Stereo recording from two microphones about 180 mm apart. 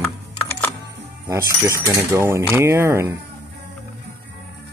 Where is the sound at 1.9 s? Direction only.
15° right (ahead or behind).